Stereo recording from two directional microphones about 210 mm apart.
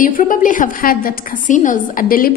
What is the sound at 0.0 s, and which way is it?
A woman's voice, 40° left (ahead or behind).